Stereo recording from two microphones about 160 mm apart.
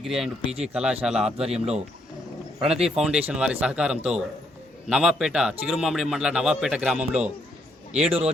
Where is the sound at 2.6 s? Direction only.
40° right (ahead or behind).